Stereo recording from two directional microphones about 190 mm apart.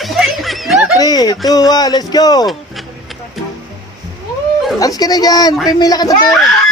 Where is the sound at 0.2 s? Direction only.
Centre (ahead or behind).